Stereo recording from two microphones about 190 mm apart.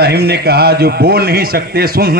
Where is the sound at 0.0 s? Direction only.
55° right (ahead or behind).